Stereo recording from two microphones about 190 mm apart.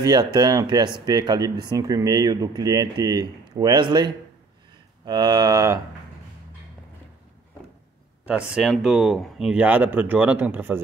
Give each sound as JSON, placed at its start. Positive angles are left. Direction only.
{"t": 0.0, "sound": "speech", "side_deg": -20}
{"t": 8.3, "sound": "speech", "side_deg": -5}